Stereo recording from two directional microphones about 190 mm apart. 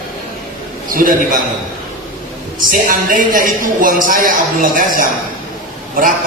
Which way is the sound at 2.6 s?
45° right (ahead or behind).